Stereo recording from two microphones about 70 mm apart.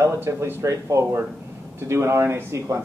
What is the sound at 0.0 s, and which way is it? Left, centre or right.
Speech, right.